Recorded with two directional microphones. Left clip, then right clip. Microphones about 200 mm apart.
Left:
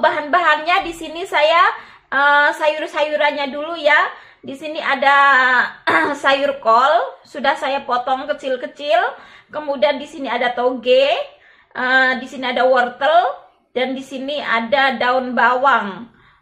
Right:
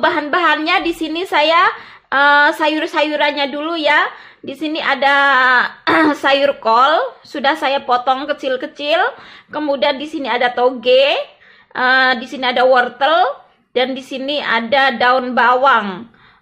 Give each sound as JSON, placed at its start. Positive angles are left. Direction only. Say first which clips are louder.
{"t": 0.0, "sound": "a woman's voice", "louder": "right 1 dB", "side_deg": -50}